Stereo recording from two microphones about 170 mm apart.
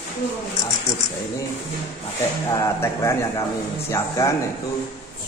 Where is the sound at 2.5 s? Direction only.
15° left (ahead or behind).